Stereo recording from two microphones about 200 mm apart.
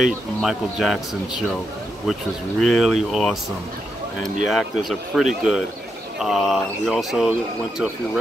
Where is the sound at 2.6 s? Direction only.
Centre (ahead or behind).